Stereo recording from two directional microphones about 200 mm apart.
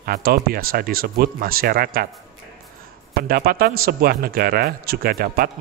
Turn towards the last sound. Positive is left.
turn(degrees=-50)  # may be behind; listen again after turning